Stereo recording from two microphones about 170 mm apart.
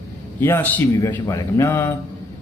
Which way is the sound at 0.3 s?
15° left (ahead or behind).